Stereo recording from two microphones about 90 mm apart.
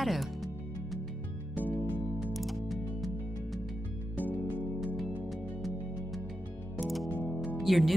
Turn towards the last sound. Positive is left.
turn(degrees=0)  # may be behind; listen again after turning